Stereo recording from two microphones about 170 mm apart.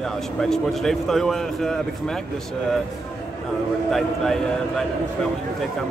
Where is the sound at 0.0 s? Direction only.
5° left (ahead or behind).